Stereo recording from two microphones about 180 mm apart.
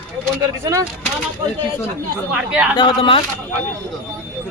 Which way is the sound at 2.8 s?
30° left (ahead or behind).